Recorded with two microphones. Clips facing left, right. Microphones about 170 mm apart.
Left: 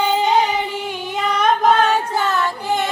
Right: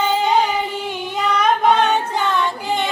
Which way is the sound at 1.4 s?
Centre (ahead or behind).